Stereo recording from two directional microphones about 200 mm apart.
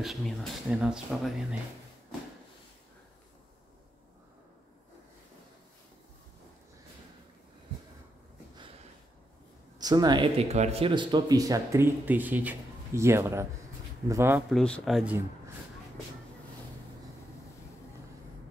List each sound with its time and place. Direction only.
0.0 s speech: centre (ahead or behind)
9.8 s speech: 20° right (ahead or behind)
14.5 s speech: centre (ahead or behind)